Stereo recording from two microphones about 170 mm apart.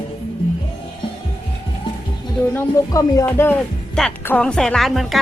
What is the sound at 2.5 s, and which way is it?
Speech, 15° left (ahead or behind).